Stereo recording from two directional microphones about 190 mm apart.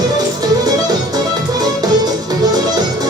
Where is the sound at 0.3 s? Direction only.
20° right (ahead or behind).